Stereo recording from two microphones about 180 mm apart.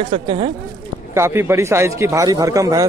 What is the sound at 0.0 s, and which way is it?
Speech, 30° right (ahead or behind).